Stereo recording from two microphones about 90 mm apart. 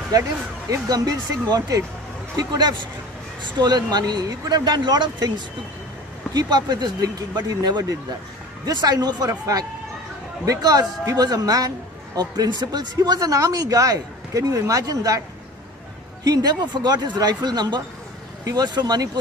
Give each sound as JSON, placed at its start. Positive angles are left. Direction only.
{"t": 0.1, "sound": "speech", "side_deg": -40}
{"t": 2.3, "sound": "speech", "side_deg": -50}
{"t": 6.3, "sound": "speech", "side_deg": -50}
{"t": 10.4, "sound": "speech", "side_deg": -40}
{"t": 16.3, "sound": "speech", "side_deg": -50}